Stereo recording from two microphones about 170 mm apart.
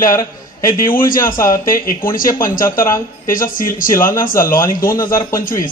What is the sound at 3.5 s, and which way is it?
Speech, 55° left (ahead or behind).